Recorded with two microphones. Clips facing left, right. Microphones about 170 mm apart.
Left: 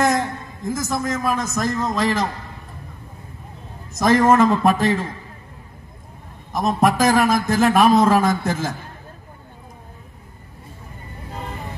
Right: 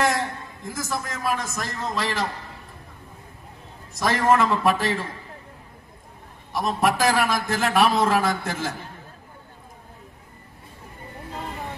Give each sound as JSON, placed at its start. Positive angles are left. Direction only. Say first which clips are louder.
{"t": 0.7, "sound": "a man's voice", "louder": "left 7 dB", "side_deg": 45}
{"t": 4.0, "sound": "a man's voice", "louder": "left 6 dB", "side_deg": 45}
{"t": 6.5, "sound": "a man's voice", "louder": "left 4 dB", "side_deg": 45}